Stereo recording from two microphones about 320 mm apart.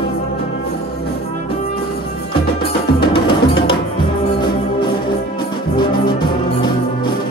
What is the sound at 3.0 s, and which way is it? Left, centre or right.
Music, centre.